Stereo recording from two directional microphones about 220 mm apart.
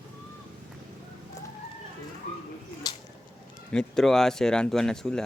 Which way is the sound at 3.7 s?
5° left (ahead or behind).